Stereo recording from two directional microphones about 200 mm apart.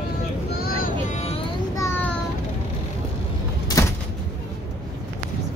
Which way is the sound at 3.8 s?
15° left (ahead or behind).